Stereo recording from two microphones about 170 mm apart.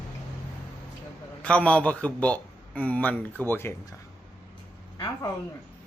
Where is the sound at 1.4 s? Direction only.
5° left (ahead or behind).